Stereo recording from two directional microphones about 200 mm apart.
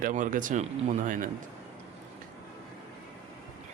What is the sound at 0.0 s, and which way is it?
Speech, 40° right (ahead or behind).